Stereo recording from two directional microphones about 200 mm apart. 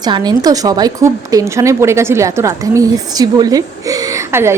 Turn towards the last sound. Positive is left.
turn(degrees=-10)  # may be behind; listen again after turning